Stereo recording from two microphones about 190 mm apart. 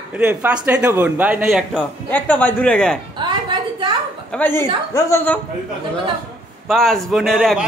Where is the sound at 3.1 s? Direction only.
25° right (ahead or behind).